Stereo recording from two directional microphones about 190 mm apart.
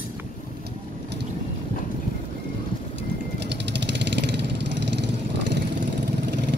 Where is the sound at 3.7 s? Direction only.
65° right (ahead or behind).